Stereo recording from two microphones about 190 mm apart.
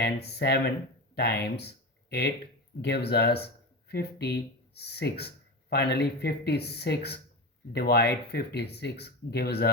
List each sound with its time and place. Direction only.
0.0 s speech: 60° left (ahead or behind)